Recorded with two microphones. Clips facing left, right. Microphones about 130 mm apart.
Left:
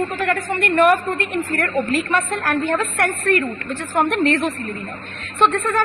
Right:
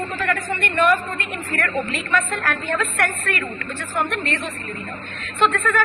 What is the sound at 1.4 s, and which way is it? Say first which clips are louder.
A woman's voice: left 1 dB; 45° left (ahead or behind).